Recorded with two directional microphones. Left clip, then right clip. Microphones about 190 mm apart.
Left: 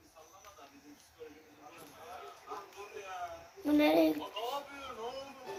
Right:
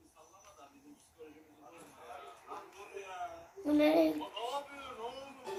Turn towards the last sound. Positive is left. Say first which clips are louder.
# left 1 dB
turn(degrees=-5)  # may be behind; listen again after turning